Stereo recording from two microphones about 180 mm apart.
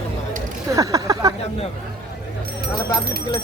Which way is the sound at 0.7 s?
20° right (ahead or behind).